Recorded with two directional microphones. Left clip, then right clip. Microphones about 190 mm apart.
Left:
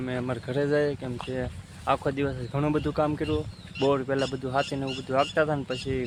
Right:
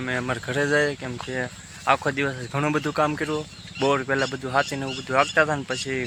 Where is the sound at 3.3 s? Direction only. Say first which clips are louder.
Right 1 dB; 20° right (ahead or behind).